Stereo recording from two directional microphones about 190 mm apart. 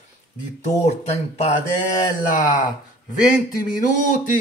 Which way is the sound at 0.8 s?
35° left (ahead or behind).